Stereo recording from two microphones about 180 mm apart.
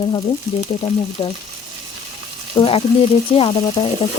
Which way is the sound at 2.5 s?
30° left (ahead or behind).